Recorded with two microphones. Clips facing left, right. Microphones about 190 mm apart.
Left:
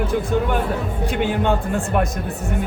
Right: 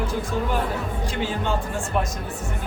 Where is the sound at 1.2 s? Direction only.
60° left (ahead or behind).